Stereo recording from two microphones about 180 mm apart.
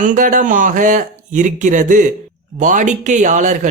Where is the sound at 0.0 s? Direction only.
45° right (ahead or behind).